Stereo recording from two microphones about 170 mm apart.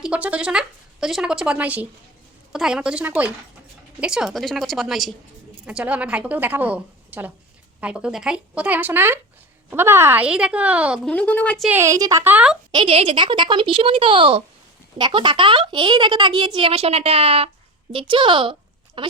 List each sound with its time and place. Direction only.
0.0 s a woman's voice: 5° right (ahead or behind)
11.0 s a woman's voice: 5° left (ahead or behind)
11.7 s a woman's voice: 15° right (ahead or behind)
12.7 s speech: 35° right (ahead or behind)